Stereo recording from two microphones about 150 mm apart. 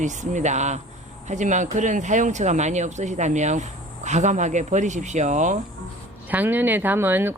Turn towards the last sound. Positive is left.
turn(degrees=-15)  # may be behind; listen again after turning